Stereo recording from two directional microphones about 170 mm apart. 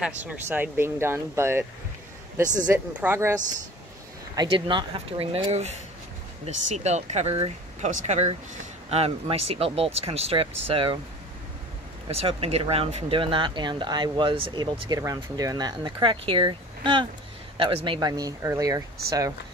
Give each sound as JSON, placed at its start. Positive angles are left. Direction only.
{"t": 0.0, "sound": "speech", "side_deg": -10}
{"t": 4.4, "sound": "speech", "side_deg": -30}
{"t": 12.1, "sound": "speech", "side_deg": -35}